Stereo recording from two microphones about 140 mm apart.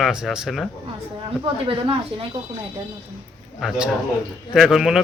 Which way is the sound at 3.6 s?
Centre (ahead or behind).